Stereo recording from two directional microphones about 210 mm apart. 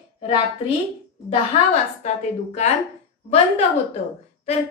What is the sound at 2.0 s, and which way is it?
A woman's voice, 35° left (ahead or behind).